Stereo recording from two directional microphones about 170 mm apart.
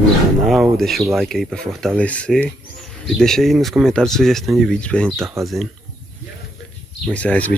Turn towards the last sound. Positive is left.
turn(degrees=10)  # may be behind; listen again after turning